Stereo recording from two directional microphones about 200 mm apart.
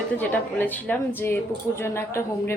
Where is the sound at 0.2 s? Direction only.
10° left (ahead or behind).